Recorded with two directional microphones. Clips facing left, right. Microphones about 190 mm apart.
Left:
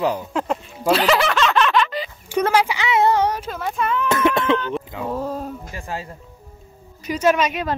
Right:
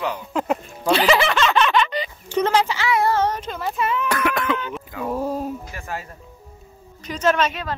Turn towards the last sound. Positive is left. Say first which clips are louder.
# left 2 dB
turn(degrees=10)  # may be behind; listen again after turning